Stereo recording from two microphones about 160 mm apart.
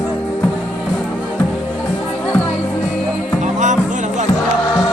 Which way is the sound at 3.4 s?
50° right (ahead or behind).